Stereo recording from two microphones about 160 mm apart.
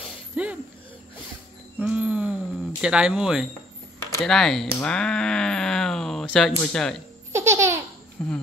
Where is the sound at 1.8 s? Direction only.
10° right (ahead or behind).